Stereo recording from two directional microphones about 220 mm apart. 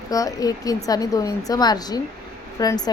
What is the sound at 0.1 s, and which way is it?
A woman's voice, 15° left (ahead or behind).